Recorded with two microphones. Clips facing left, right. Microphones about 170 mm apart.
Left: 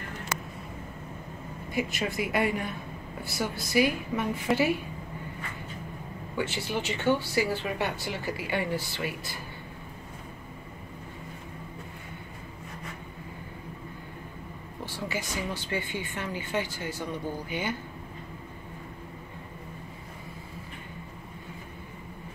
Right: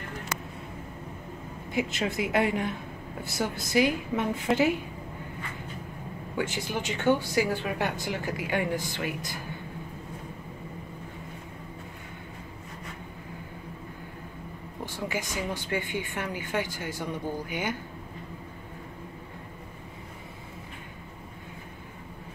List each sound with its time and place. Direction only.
1.7 s a woman's voice: 20° right (ahead or behind)
6.3 s speech: 15° right (ahead or behind)
14.9 s speech: 15° right (ahead or behind)